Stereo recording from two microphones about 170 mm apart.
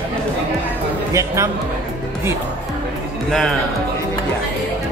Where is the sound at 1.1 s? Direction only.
15° right (ahead or behind).